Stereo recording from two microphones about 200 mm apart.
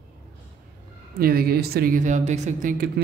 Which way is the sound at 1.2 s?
50° right (ahead or behind).